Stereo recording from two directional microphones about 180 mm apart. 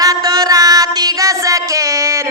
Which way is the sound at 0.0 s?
20° right (ahead or behind).